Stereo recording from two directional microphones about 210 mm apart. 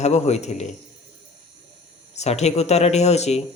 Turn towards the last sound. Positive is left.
turn(degrees=30)  # may be behind; listen again after turning